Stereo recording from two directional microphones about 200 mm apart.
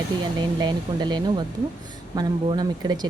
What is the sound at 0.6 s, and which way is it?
Speech, 20° right (ahead or behind).